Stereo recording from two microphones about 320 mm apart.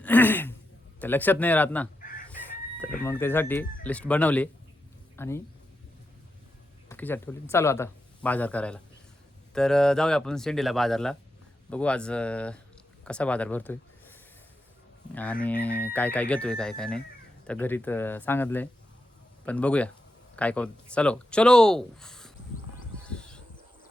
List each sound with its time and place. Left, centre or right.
0.0 s a sound: centre
0.9 s speech: centre
2.0 s chicken: left
3.0 s speech: centre
6.8 s speech: centre
23.0 s a sound: centre